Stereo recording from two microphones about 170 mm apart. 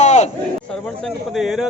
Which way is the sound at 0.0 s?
40° left (ahead or behind).